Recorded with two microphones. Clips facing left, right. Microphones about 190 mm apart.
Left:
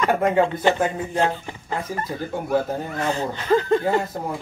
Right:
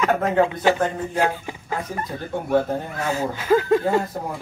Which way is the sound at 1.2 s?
10° right (ahead or behind).